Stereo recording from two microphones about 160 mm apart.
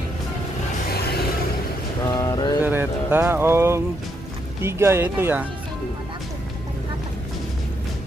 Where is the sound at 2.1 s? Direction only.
25° left (ahead or behind).